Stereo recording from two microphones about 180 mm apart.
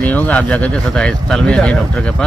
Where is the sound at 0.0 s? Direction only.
10° left (ahead or behind).